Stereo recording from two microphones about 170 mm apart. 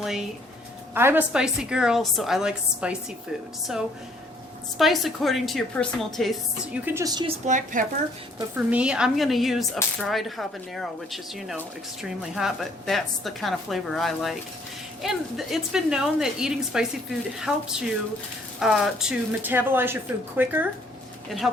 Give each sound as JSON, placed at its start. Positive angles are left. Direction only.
{"t": 0.0, "sound": "speech", "side_deg": -5}
{"t": 0.9, "sound": "a woman's voice", "side_deg": -15}
{"t": 6.8, "sound": "speech", "side_deg": -20}
{"t": 7.4, "sound": "speech", "side_deg": -50}
{"t": 8.5, "sound": "a woman's voice", "side_deg": -5}